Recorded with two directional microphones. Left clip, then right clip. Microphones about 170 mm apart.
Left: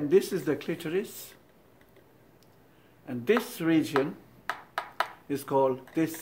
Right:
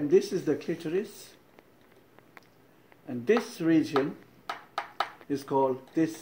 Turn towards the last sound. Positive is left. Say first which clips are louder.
# even
turn(degrees=-15)  # may be behind; listen again after turning